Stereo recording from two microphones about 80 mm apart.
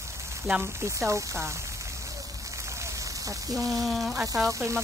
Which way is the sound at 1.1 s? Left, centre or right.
Right.